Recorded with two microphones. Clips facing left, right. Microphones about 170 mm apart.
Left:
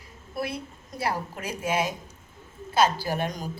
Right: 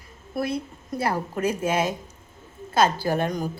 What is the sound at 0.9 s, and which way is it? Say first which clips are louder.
A woman's voice: right 4 dB; 50° right (ahead or behind).